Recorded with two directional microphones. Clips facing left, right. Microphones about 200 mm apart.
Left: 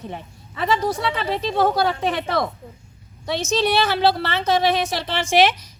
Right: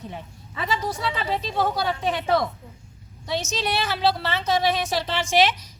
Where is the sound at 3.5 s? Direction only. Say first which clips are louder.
Left 11 dB; 65° left (ahead or behind).